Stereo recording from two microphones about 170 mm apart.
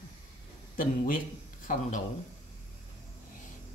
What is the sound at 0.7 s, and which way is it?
A man's voice, 55° left (ahead or behind).